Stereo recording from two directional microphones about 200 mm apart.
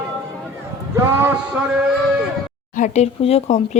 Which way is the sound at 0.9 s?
10° right (ahead or behind).